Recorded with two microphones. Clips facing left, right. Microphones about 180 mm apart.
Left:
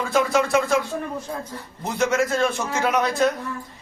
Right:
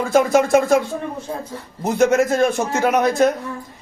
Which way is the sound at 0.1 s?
45° right (ahead or behind).